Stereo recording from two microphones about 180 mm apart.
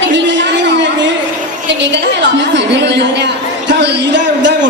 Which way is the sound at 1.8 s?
75° right (ahead or behind).